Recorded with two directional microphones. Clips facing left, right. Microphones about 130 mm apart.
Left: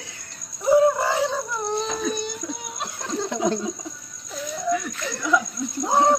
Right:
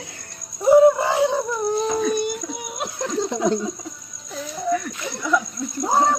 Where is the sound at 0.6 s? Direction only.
20° right (ahead or behind).